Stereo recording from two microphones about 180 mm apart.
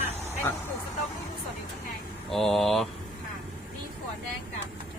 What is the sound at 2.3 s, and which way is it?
Speech, centre (ahead or behind).